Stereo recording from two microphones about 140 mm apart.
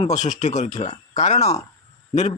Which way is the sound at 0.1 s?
60° left (ahead or behind).